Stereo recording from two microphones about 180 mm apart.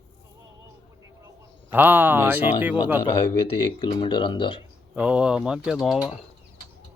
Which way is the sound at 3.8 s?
25° left (ahead or behind).